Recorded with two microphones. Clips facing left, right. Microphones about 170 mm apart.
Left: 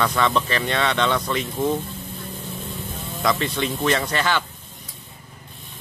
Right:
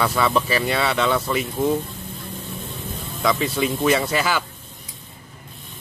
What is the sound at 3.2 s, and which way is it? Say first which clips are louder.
Speech: right 2 dB; 5° right (ahead or behind).